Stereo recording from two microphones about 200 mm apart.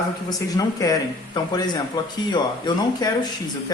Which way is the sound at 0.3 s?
15° left (ahead or behind).